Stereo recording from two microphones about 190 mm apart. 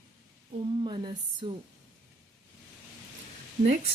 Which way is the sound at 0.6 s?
25° right (ahead or behind).